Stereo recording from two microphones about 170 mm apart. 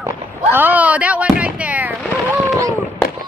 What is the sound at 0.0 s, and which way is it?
Fireworks, 10° right (ahead or behind).